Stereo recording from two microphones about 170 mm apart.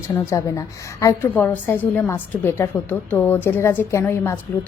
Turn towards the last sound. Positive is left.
turn(degrees=15)  # may be behind; listen again after turning